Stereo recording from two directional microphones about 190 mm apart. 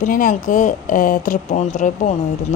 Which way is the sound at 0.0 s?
45° left (ahead or behind).